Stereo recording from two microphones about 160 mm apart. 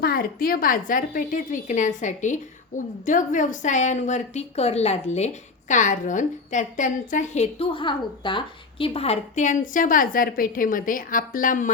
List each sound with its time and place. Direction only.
0.0 s a woman's voice: 70° left (ahead or behind)